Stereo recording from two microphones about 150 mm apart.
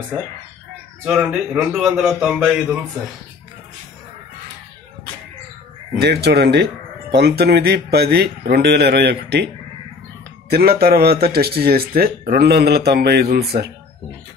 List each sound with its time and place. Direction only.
1.0 s a man's voice: 5° right (ahead or behind)
5.9 s speech: 90° right
10.5 s speech: 90° right